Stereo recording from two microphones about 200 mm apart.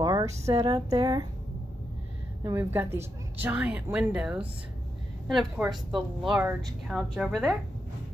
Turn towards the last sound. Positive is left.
turn(degrees=0)  # may be behind; listen again after turning